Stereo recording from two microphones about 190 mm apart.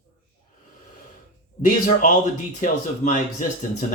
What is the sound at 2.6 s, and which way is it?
Speech, 40° left (ahead or behind).